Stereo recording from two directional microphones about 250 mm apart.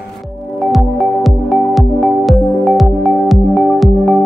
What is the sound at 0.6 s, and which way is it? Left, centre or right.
Music, centre.